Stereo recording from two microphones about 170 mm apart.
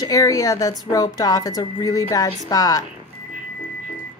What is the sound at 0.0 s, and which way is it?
Speech, 20° left (ahead or behind).